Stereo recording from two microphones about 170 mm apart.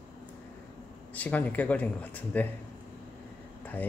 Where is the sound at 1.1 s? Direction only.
10° left (ahead or behind).